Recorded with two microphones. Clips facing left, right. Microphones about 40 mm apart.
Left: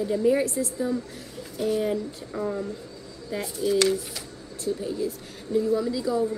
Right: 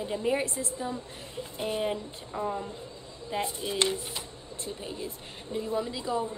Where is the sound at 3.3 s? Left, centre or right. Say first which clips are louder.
Left 6 dB; right.